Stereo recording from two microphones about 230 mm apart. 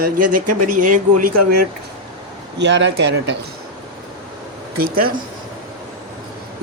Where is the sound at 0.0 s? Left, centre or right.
Right.